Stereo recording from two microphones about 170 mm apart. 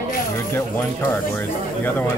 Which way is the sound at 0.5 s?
15° left (ahead or behind).